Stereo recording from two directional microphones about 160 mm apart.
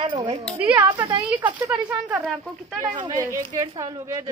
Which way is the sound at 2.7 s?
25° right (ahead or behind).